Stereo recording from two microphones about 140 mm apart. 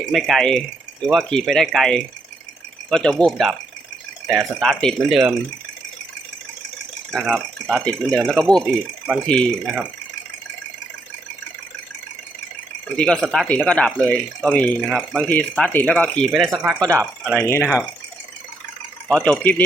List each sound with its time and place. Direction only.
0.0 s speech: centre (ahead or behind)
7.1 s speech: centre (ahead or behind)
13.0 s speech: 5° left (ahead or behind)
14.8 s speech: 5° right (ahead or behind)
15.3 s speech: 10° left (ahead or behind)
16.8 s speech: 20° right (ahead or behind)
17.4 s speech: 20° left (ahead or behind)
19.0 s speech: 10° left (ahead or behind)